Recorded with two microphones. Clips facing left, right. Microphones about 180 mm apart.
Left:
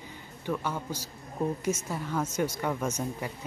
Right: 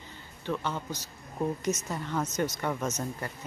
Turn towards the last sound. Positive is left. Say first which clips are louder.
# left 1 dB
turn(degrees=10)  # may be behind; listen again after turning